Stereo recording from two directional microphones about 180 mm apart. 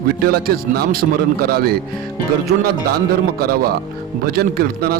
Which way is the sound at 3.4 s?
60° right (ahead or behind).